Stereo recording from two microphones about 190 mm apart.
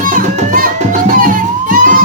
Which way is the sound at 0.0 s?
45° right (ahead or behind).